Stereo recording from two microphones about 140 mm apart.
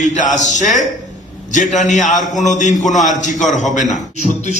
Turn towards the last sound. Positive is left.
turn(degrees=60)  # may be behind; listen again after turning